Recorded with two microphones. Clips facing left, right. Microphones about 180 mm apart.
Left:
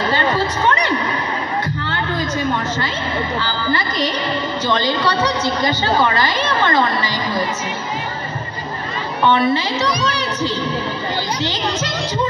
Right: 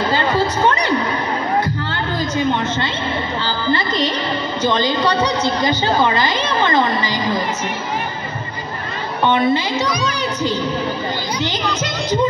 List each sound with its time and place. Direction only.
3.4 s music: 25° right (ahead or behind)
4.6 s a woman's voice: 20° right (ahead or behind)
9.3 s a woman's voice: 20° right (ahead or behind)